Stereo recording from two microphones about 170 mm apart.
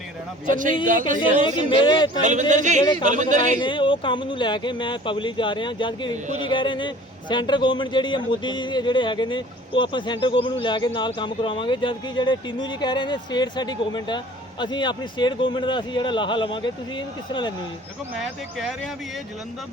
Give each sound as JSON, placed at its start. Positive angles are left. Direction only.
{"t": 0.4, "sound": "speech", "side_deg": -50}
{"t": 1.5, "sound": "a man's voice", "side_deg": 25}
{"t": 2.2, "sound": "speech", "side_deg": -45}
{"t": 3.6, "sound": "a man's voice", "side_deg": 30}